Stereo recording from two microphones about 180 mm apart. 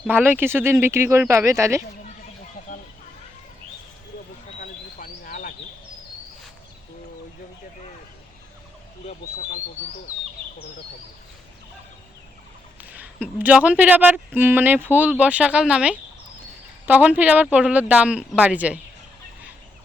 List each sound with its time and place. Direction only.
0.1 s a woman's voice: 10° right (ahead or behind)
2.7 s a sound: 45° left (ahead or behind)
4.6 s bird: 50° left (ahead or behind)
9.0 s bird: 40° left (ahead or behind)
12.8 s a woman's voice: 10° right (ahead or behind)